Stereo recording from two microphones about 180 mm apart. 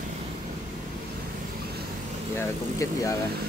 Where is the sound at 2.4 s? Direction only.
15° left (ahead or behind).